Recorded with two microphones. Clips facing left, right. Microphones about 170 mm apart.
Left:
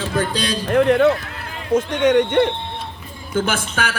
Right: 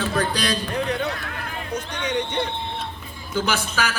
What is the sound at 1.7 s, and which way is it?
Speech, 90° left.